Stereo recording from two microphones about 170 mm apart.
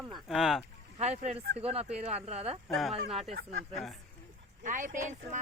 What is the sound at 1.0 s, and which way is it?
Speech, 40° right (ahead or behind).